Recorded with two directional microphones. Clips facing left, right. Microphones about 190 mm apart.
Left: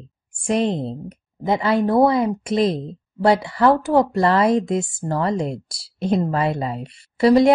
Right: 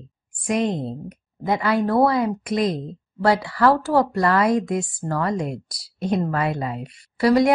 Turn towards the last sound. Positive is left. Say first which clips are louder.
# left 3 dB
turn(degrees=25)  # may be behind; listen again after turning